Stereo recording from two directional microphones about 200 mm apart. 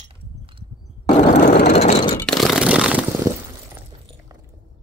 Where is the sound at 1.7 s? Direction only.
35° left (ahead or behind).